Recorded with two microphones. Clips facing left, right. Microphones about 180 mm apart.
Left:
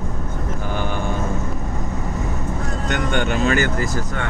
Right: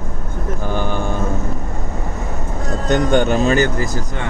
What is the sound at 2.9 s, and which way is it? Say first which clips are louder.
Speech: right 7 dB; 40° right (ahead or behind).